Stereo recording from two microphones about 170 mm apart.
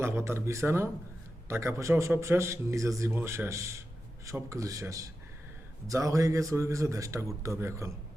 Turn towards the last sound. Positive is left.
turn(degrees=-15)  # may be behind; listen again after turning